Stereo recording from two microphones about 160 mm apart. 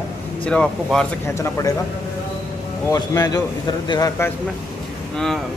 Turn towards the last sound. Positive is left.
turn(degrees=5)  # may be behind; listen again after turning